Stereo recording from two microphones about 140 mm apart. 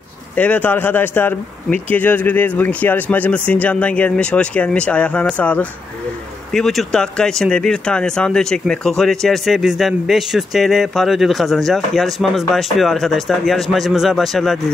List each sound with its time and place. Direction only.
0.4 s speech: 10° left (ahead or behind)